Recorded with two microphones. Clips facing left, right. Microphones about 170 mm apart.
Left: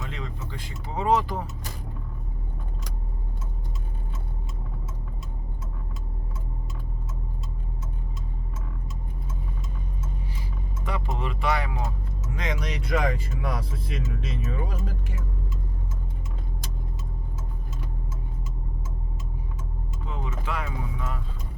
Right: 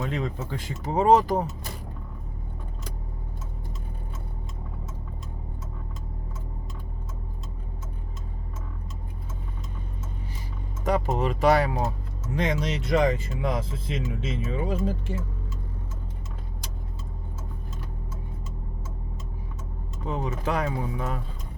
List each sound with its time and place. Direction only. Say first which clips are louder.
0.0 s speech: right 7 dB; 45° right (ahead or behind)
10.8 s speech: right 7 dB; 40° right (ahead or behind); by 15.1 s 25° right (ahead or behind)
20.1 s speech: right 6 dB; 40° right (ahead or behind)